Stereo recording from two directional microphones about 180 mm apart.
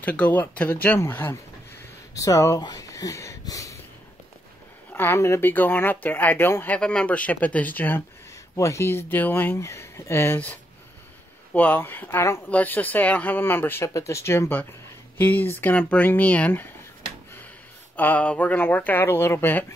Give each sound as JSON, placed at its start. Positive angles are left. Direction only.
{"t": 0.0, "sound": "speech", "side_deg": 10}
{"t": 1.8, "sound": "a sound", "side_deg": 20}
{"t": 4.9, "sound": "speech", "side_deg": 15}
{"t": 17.9, "sound": "speech", "side_deg": 10}